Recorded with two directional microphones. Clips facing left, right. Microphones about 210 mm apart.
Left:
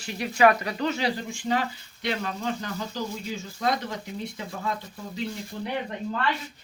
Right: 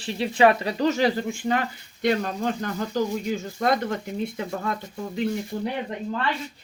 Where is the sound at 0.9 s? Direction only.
50° right (ahead or behind).